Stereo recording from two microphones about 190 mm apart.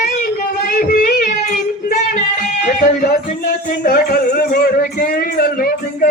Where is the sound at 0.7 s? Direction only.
45° left (ahead or behind).